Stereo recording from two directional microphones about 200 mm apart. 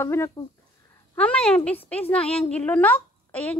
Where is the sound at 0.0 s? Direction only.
15° left (ahead or behind).